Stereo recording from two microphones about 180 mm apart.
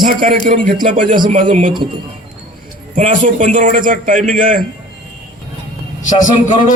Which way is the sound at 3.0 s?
45° right (ahead or behind).